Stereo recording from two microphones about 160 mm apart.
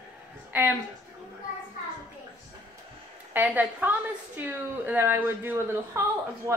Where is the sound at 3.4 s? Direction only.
10° right (ahead or behind).